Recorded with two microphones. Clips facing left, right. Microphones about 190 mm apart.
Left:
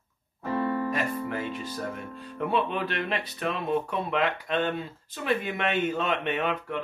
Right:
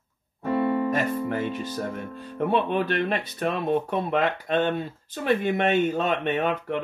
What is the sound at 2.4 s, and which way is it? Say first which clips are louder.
Speech: right 4 dB; 50° right (ahead or behind).